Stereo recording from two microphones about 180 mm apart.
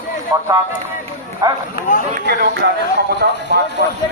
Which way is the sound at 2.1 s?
60° right (ahead or behind).